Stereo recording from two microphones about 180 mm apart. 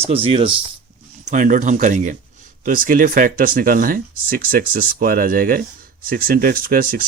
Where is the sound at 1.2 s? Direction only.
45° right (ahead or behind).